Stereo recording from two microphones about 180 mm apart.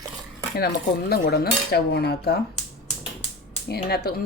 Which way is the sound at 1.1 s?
65° left (ahead or behind).